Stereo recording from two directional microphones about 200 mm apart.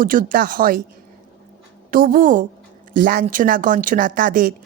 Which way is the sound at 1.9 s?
45° right (ahead or behind).